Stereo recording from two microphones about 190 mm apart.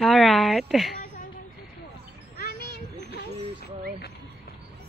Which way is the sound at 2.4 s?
55° left (ahead or behind).